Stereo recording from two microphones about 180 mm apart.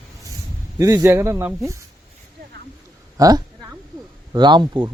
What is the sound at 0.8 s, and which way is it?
Speech, 15° right (ahead or behind).